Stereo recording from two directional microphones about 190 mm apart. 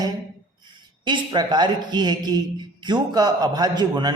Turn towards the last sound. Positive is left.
turn(degrees=-20)  # may be behind; listen again after turning